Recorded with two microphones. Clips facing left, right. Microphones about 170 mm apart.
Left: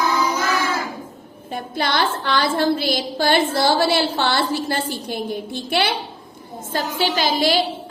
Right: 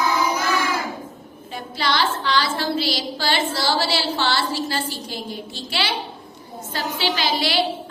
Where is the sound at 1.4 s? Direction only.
50° left (ahead or behind).